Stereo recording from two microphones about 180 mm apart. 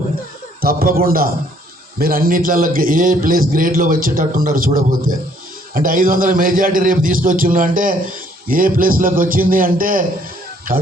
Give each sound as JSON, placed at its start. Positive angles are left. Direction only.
{"t": 0.6, "sound": "a man's voice", "side_deg": -55}